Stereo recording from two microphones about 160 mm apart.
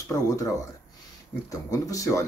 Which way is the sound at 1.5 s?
20° left (ahead or behind).